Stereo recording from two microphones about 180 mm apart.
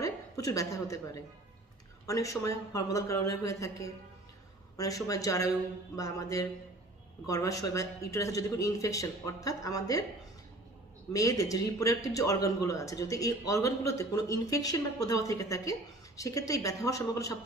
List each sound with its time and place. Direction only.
0.0 s a woman's voice: 20° left (ahead or behind)
11.1 s a man's voice: 20° left (ahead or behind)